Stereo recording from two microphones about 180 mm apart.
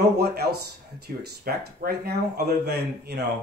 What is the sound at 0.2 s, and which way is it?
Speech, 60° right (ahead or behind).